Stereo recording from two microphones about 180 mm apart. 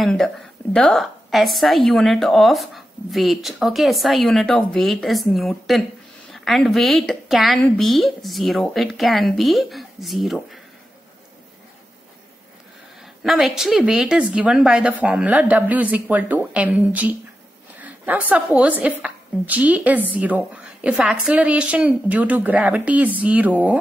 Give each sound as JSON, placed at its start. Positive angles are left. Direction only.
{"t": 0.0, "sound": "a woman's voice", "side_deg": 0}
{"t": 13.2, "sound": "a woman's voice", "side_deg": 0}
{"t": 17.8, "sound": "a sound", "side_deg": -10}
{"t": 18.6, "sound": "a woman's voice", "side_deg": -5}